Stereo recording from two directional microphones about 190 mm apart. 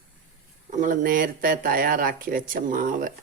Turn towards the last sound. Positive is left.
turn(degrees=-45)  # may be behind; listen again after turning